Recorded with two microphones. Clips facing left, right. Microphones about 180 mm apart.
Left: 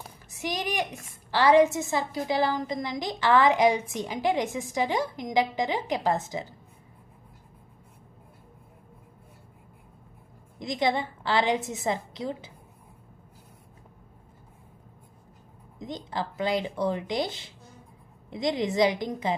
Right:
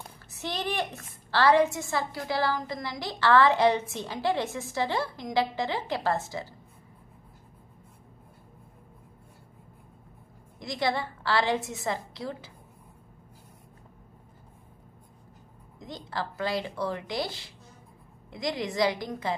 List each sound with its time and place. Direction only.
0.0 s a woman's voice: 10° left (ahead or behind)
10.6 s a woman's voice: 20° left (ahead or behind)
15.8 s a woman's voice: 20° left (ahead or behind)